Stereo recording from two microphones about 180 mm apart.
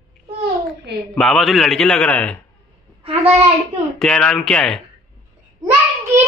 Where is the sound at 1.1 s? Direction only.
Centre (ahead or behind).